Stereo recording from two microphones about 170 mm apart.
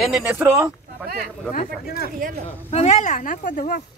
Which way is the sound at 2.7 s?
40° left (ahead or behind).